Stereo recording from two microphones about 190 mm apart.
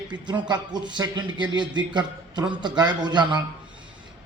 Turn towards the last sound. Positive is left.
turn(degrees=-25)  # may be behind; listen again after turning